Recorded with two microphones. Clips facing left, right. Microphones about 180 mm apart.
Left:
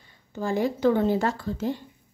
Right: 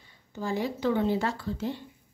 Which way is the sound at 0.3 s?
50° left (ahead or behind).